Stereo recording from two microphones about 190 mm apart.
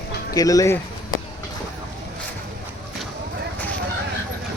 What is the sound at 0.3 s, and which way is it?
Speech, 20° left (ahead or behind).